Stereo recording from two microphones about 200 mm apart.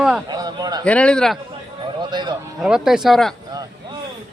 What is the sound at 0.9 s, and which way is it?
Speech, 5° left (ahead or behind).